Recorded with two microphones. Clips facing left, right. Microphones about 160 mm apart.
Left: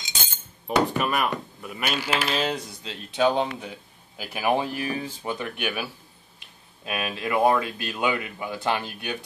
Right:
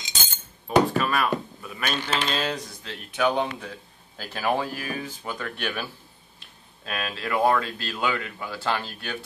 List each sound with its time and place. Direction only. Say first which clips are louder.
0.7 s speech: right 2 dB; 15° left (ahead or behind)
2.8 s speech: left 2 dB; 20° left (ahead or behind)